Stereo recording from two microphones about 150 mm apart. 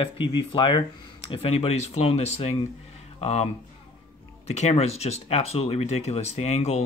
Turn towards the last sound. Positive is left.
turn(degrees=45)  # may be behind; listen again after turning